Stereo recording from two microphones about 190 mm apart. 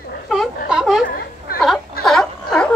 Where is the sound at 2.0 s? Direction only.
Centre (ahead or behind).